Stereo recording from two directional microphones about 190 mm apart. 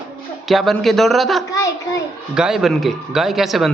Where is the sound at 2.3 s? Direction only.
5° right (ahead or behind).